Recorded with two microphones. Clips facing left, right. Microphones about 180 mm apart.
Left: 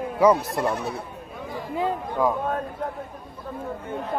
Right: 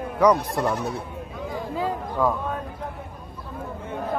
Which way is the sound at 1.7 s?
20° left (ahead or behind).